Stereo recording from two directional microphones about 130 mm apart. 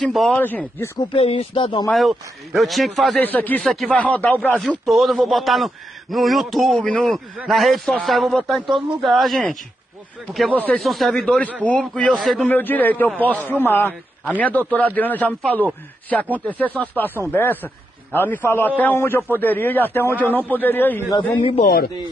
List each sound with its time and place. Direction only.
0.0 s speech: centre (ahead or behind)
0.4 s a man's voice: 15° left (ahead or behind)
0.9 s speech: 45° left (ahead or behind)
1.9 s speech: centre (ahead or behind)
3.2 s a man's voice: 15° left (ahead or behind)
10.7 s speech: centre (ahead or behind)
12.4 s a man's voice: 15° left (ahead or behind)
21.4 s speech: 45° left (ahead or behind)